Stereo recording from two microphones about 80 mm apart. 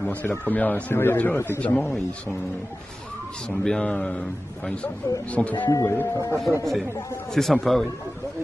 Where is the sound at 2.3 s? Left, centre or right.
Centre.